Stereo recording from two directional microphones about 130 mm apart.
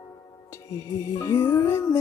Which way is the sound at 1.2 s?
20° left (ahead or behind).